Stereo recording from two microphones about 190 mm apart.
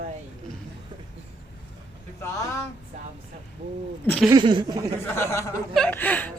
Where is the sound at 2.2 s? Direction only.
15° left (ahead or behind).